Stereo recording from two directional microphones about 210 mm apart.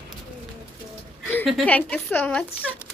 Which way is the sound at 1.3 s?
5° left (ahead or behind).